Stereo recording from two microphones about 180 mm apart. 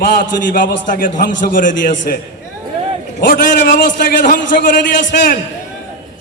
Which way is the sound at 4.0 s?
45° left (ahead or behind).